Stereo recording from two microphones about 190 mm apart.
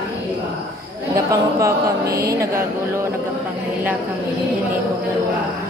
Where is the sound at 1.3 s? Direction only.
15° right (ahead or behind).